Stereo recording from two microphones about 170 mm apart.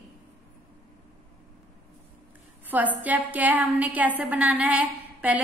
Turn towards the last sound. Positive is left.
turn(degrees=-10)  # may be behind; listen again after turning